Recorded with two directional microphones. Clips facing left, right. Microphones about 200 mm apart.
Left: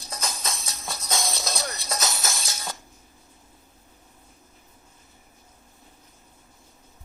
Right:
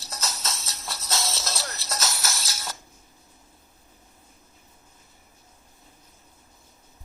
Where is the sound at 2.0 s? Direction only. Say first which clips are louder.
Even; 20° left (ahead or behind).